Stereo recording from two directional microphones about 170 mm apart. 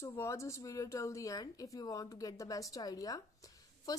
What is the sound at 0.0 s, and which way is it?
Speech, 15° left (ahead or behind).